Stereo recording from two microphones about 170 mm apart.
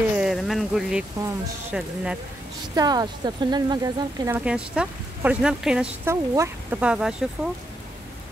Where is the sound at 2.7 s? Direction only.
25° right (ahead or behind).